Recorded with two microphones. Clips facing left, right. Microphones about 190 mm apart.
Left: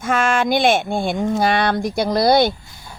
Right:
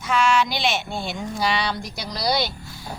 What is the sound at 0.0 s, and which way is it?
Speech, 50° left (ahead or behind).